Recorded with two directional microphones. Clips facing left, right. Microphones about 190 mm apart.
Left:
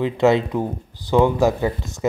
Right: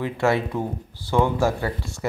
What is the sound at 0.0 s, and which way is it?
Speech, 20° left (ahead or behind).